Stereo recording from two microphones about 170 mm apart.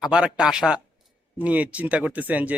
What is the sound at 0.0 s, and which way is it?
Speech, 5° right (ahead or behind).